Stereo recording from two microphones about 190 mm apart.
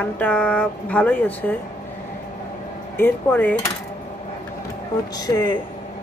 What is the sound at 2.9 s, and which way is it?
Speech, 10° left (ahead or behind).